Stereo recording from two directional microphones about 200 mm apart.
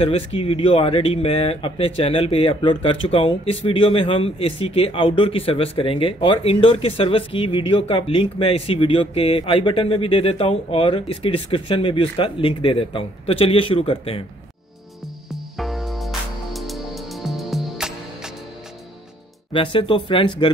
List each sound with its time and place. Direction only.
0.0 s speech: 30° left (ahead or behind)
15.5 s music: centre (ahead or behind)
19.5 s speech: 25° left (ahead or behind)